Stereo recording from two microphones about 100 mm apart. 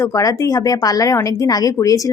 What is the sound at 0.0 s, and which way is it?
Speech, 35° left (ahead or behind).